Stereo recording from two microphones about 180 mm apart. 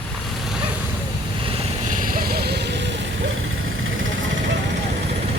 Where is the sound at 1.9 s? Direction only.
50° right (ahead or behind); by 2.9 s 70° right (ahead or behind).